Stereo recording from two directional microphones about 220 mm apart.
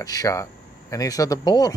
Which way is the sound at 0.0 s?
15° left (ahead or behind).